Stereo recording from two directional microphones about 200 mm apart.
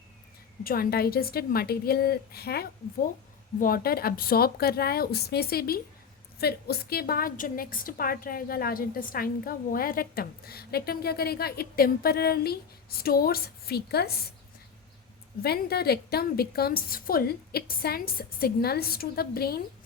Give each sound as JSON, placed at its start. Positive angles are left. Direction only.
{"t": 0.6, "sound": "a woman's voice", "side_deg": 50}
{"t": 15.4, "sound": "a woman's voice", "side_deg": 50}